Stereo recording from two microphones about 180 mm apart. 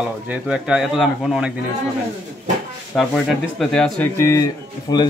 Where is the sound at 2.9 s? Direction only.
Centre (ahead or behind).